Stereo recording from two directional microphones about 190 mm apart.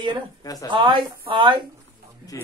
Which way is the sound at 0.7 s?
25° right (ahead or behind).